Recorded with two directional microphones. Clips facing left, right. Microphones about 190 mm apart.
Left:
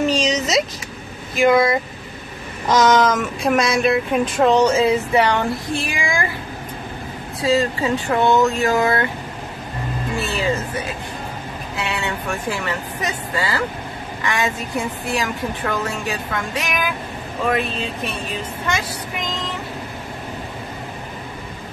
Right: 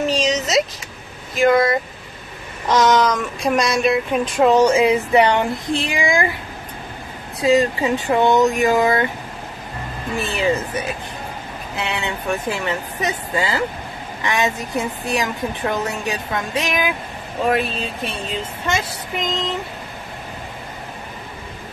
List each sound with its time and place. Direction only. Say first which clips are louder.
0.1 s speech: even; centre (ahead or behind); by 6.2 s 20° right (ahead or behind)
7.3 s speech: right 3 dB; 20° right (ahead or behind)
10.1 s a woman's voice: right 2 dB; 20° right (ahead or behind)
11.7 s a woman's voice: even; 20° right (ahead or behind)
19.2 s a woman's voice: right 5 dB; 20° right (ahead or behind)